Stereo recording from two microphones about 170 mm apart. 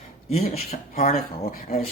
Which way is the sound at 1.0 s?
55° left (ahead or behind).